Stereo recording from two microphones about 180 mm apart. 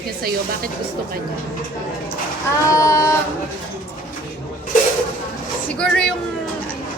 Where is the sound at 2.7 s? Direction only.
20° left (ahead or behind).